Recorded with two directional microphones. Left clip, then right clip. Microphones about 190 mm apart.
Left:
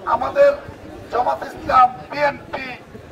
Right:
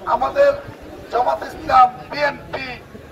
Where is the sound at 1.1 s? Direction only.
30° left (ahead or behind).